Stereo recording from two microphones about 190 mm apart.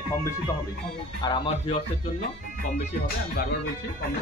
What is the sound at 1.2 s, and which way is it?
Speech, 25° left (ahead or behind).